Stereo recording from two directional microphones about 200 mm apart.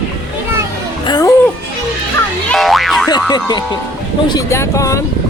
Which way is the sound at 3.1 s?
20° left (ahead or behind).